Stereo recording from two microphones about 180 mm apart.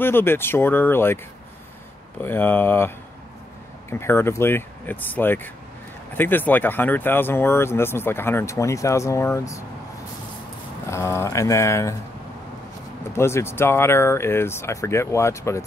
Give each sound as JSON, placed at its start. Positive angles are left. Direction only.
{"t": 0.0, "sound": "speech", "side_deg": 10}
{"t": 2.2, "sound": "speech", "side_deg": 10}
{"t": 3.9, "sound": "speech", "side_deg": 15}
{"t": 10.9, "sound": "speech", "side_deg": 15}
{"t": 13.1, "sound": "speech", "side_deg": 15}